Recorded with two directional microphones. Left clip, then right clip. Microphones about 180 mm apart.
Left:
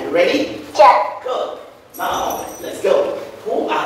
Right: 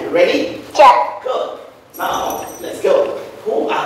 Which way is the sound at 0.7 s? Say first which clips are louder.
Right 2 dB; 20° right (ahead or behind).